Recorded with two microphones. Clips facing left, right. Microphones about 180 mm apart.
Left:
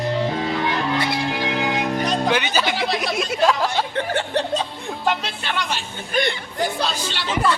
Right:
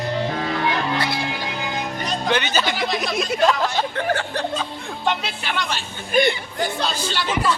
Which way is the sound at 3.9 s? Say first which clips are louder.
Left 1 dB; 25° left (ahead or behind).